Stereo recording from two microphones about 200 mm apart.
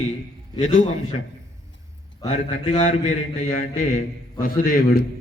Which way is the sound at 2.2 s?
35° left (ahead or behind).